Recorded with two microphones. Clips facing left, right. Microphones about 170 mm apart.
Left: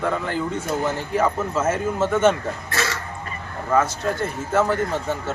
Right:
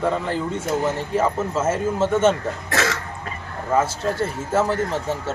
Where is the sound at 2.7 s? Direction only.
90° right.